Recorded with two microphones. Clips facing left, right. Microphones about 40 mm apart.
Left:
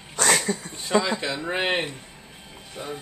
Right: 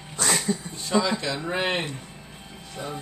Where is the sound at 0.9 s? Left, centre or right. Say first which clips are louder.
Left 1 dB; left.